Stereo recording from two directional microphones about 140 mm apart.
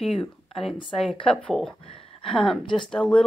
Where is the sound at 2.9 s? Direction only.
5° left (ahead or behind).